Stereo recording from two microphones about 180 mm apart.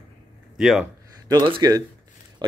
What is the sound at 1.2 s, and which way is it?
Speech, 25° right (ahead or behind).